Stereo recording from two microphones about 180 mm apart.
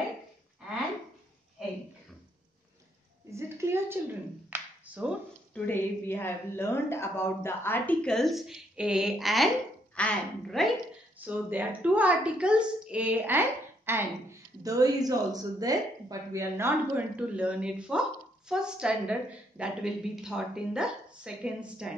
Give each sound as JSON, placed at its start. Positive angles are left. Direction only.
{"t": 3.3, "sound": "a sound", "side_deg": -15}
{"t": 5.5, "sound": "a woman's voice", "side_deg": 10}
{"t": 11.1, "sound": "a woman's voice", "side_deg": -10}